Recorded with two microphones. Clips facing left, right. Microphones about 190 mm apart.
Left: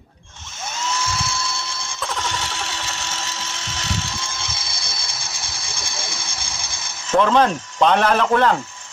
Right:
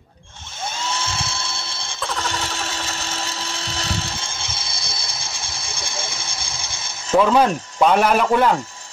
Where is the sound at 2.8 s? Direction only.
35° right (ahead or behind).